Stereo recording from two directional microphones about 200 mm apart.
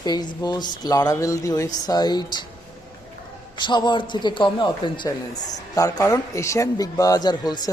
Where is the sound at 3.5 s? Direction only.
20° left (ahead or behind).